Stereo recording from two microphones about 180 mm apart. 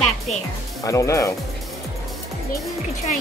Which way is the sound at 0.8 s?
15° left (ahead or behind).